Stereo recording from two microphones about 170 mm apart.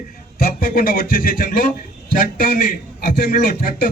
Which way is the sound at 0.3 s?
60° left (ahead or behind).